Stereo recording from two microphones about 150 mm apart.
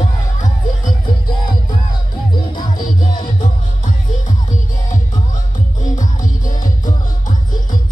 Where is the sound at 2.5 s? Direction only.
30° left (ahead or behind).